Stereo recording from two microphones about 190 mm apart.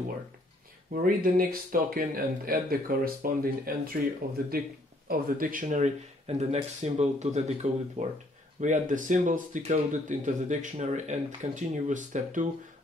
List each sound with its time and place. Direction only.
0.9 s speech: 50° right (ahead or behind)